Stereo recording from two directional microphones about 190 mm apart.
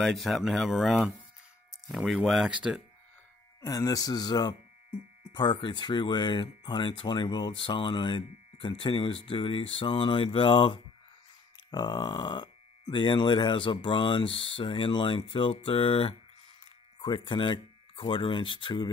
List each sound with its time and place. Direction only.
0.0 s speech: centre (ahead or behind)
3.6 s speech: 20° left (ahead or behind)